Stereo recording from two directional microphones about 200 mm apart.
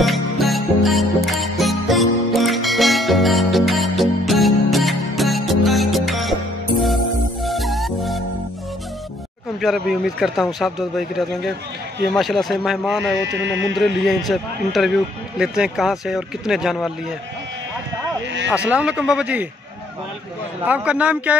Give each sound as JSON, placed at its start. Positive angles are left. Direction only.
{"t": 0.0, "sound": "music", "side_deg": 0}
{"t": 7.4, "sound": "music", "side_deg": 0}
{"t": 9.6, "sound": "speech", "side_deg": 0}
{"t": 13.2, "sound": "a sound", "side_deg": -65}
{"t": 13.7, "sound": "speech", "side_deg": 0}
{"t": 18.5, "sound": "speech", "side_deg": -5}
{"t": 20.6, "sound": "a man's voice", "side_deg": -5}